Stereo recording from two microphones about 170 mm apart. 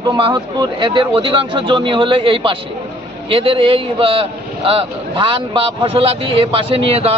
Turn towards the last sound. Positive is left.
turn(degrees=-35)  # may be behind; listen again after turning